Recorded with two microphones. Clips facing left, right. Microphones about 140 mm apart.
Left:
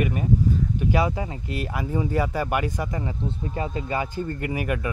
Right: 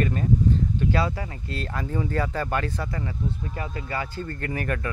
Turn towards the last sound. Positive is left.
turn(degrees=15)  # may be behind; listen again after turning